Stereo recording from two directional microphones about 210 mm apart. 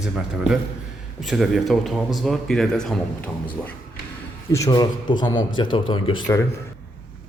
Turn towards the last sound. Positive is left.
turn(degrees=20)  # may be behind; listen again after turning